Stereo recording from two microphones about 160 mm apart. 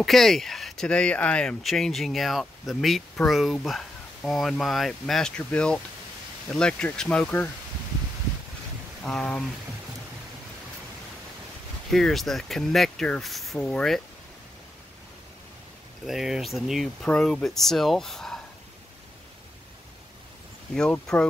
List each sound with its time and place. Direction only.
0.0 s speech: centre (ahead or behind)
9.0 s speech: 5° left (ahead or behind)
11.9 s speech: centre (ahead or behind)
16.1 s speech: centre (ahead or behind)
20.7 s speech: 5° left (ahead or behind)